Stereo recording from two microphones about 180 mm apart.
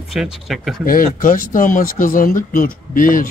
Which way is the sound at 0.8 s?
55° left (ahead or behind).